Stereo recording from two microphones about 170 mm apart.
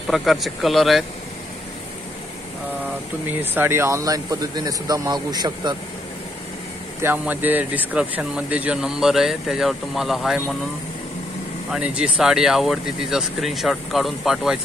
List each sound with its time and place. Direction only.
0.1 s speech: centre (ahead or behind)
3.5 s speech: 15° right (ahead or behind)
7.0 s speech: 10° right (ahead or behind)
11.7 s speech: 5° right (ahead or behind)